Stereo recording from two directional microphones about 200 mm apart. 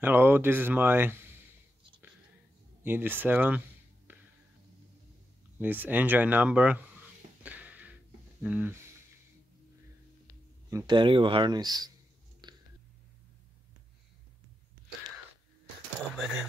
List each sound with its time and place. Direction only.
0.0 s speech: 10° right (ahead or behind)
2.8 s speech: 10° right (ahead or behind)
4.1 s music: 10° right (ahead or behind)
5.6 s speech: 10° right (ahead or behind)
7.4 s a sound: 10° right (ahead or behind)
10.7 s speech: 20° right (ahead or behind)
12.4 s a sound: 20° right (ahead or behind)
16.2 s speech: 5° right (ahead or behind)